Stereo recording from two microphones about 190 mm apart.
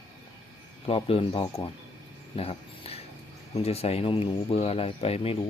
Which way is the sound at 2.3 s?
30° left (ahead or behind).